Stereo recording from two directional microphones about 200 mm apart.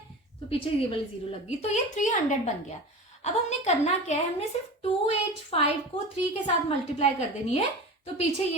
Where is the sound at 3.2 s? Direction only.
35° left (ahead or behind).